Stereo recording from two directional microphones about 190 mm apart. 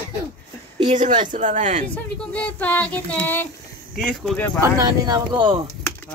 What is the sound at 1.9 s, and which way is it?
Speech, 10° left (ahead or behind).